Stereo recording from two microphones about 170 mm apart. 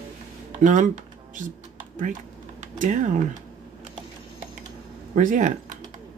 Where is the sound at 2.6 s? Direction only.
45° right (ahead or behind).